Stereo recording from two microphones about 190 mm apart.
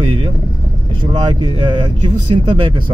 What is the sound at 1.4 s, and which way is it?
Speech, 30° right (ahead or behind).